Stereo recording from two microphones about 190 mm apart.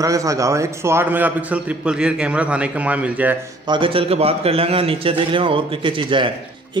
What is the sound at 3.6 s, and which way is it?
A man's voice, 25° right (ahead or behind).